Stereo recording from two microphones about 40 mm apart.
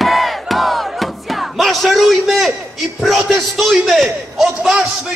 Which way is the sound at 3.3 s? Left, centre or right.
Centre.